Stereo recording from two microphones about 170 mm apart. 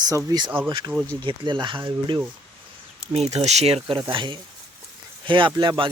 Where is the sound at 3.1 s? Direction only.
40° right (ahead or behind).